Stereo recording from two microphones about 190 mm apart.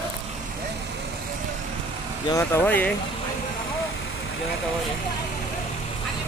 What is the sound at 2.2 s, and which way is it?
Speech, 15° left (ahead or behind).